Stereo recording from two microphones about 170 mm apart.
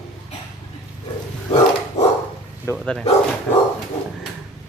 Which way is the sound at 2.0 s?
40° left (ahead or behind).